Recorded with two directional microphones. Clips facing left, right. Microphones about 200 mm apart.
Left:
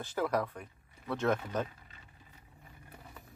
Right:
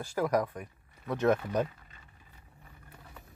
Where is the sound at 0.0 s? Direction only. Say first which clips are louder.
Right 3 dB; 10° right (ahead or behind).